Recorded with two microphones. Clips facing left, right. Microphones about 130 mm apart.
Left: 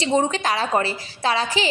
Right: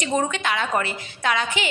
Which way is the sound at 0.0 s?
30° left (ahead or behind).